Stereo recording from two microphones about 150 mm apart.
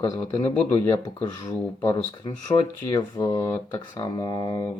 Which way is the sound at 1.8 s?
30° left (ahead or behind).